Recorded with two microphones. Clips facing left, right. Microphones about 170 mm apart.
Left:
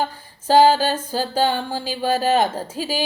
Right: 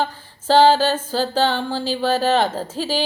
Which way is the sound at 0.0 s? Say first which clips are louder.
Right 1 dB; 10° left (ahead or behind).